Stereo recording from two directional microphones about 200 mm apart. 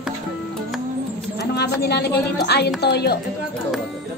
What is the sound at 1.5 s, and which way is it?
A woman's voice, 55° left (ahead or behind).